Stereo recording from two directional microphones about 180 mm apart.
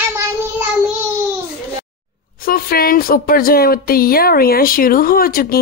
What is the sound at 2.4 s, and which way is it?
A woman's voice, 55° left (ahead or behind).